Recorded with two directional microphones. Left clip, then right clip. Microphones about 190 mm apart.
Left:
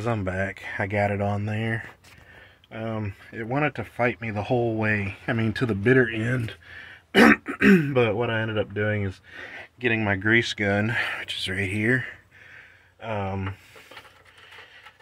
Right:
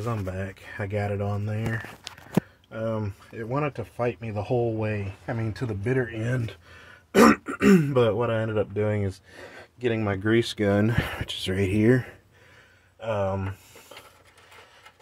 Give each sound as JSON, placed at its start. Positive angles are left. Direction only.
{"t": 0.0, "sound": "speech", "side_deg": 15}
{"t": 2.7, "sound": "speech", "side_deg": 0}
{"t": 3.3, "sound": "speech", "side_deg": 10}
{"t": 5.2, "sound": "speech", "side_deg": 40}
{"t": 6.1, "sound": "speech", "side_deg": 15}
{"t": 7.1, "sound": "speech", "side_deg": 0}
{"t": 10.4, "sound": "speech", "side_deg": -30}
{"t": 13.0, "sound": "speech", "side_deg": 0}